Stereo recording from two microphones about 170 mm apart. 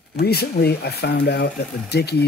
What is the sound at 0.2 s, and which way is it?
Speech, 70° left (ahead or behind).